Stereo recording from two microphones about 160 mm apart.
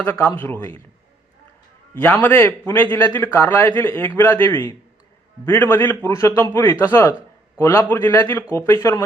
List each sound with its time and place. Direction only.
0.0 s a man's voice: 10° left (ahead or behind)
2.0 s a man's voice: 10° left (ahead or behind)